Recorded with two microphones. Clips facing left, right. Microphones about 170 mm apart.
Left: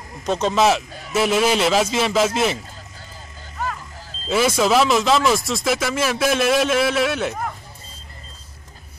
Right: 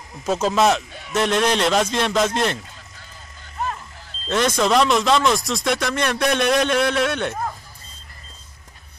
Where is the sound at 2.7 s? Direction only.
35° left (ahead or behind).